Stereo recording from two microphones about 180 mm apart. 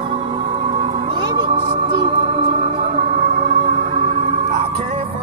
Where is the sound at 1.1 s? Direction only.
25° right (ahead or behind).